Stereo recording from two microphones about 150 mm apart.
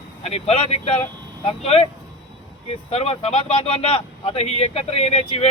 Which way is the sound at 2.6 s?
40° left (ahead or behind).